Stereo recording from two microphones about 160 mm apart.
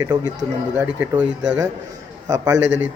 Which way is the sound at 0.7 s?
10° right (ahead or behind).